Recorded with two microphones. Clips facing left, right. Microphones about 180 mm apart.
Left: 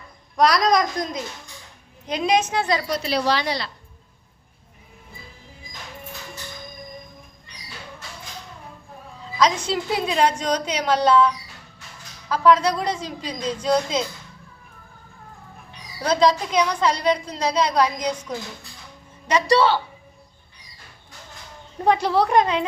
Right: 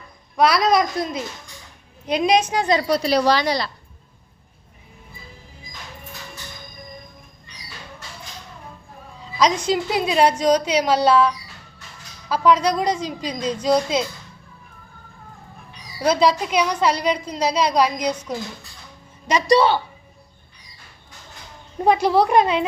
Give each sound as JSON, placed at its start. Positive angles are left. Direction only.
{"t": 0.3, "sound": "a woman's voice", "side_deg": -5}
{"t": 2.9, "sound": "a woman's voice", "side_deg": -35}
{"t": 9.6, "sound": "a woman's voice", "side_deg": -15}
{"t": 12.3, "sound": "a woman's voice", "side_deg": -15}
{"t": 16.0, "sound": "a woman's voice", "side_deg": -10}
{"t": 19.3, "sound": "a woman's voice", "side_deg": -15}
{"t": 21.8, "sound": "a woman's voice", "side_deg": -10}